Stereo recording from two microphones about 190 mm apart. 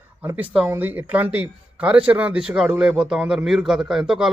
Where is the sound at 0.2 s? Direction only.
10° right (ahead or behind).